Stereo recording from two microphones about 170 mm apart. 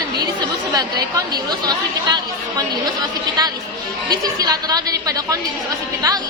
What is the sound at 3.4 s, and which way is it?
A woman's voice, 25° right (ahead or behind).